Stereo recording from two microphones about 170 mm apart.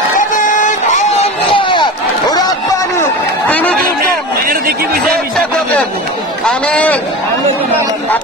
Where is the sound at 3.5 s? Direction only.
10° left (ahead or behind).